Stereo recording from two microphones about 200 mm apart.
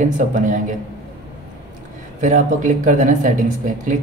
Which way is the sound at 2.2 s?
40° right (ahead or behind).